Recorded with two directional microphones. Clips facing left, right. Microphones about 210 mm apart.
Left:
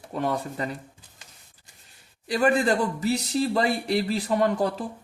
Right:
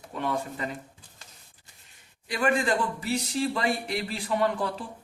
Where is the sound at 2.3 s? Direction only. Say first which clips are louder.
Left 4 dB; 40° left (ahead or behind).